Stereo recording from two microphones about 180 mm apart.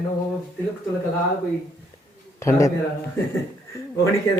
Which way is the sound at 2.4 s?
15° left (ahead or behind).